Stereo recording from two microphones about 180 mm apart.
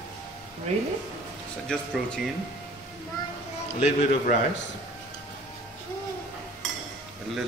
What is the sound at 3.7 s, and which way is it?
Speech, 40° left (ahead or behind).